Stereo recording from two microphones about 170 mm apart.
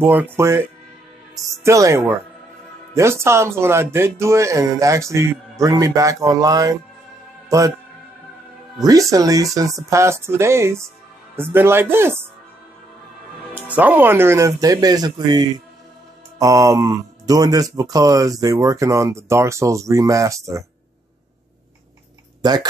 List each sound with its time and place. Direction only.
0.0 s speech: 15° right (ahead or behind)
8.8 s speech: 20° right (ahead or behind)
13.6 s speech: 10° right (ahead or behind)
22.4 s speech: 25° right (ahead or behind)